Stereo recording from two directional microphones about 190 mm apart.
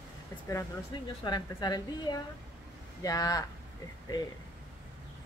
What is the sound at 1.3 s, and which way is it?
A woman's voice, 20° left (ahead or behind).